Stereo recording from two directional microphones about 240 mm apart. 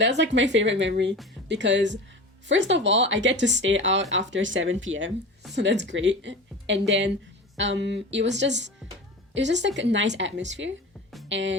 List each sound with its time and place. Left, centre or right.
0.0 s speech: right